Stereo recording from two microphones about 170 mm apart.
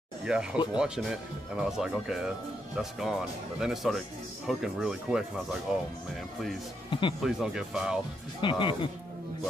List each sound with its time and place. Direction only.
0.2 s speech: 5° right (ahead or behind)
6.9 s speech: 30° left (ahead or behind)
7.2 s speech: centre (ahead or behind)
8.4 s speech: 30° left (ahead or behind)